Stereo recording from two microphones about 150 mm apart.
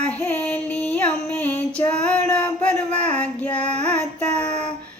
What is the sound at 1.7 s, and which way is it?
Child singing, 5° left (ahead or behind).